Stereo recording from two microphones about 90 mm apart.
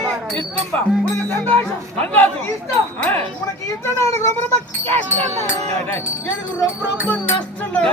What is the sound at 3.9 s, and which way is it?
Speech, 30° left (ahead or behind).